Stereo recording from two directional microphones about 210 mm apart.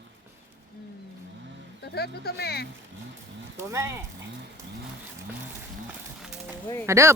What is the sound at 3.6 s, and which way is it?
Speech, 15° right (ahead or behind).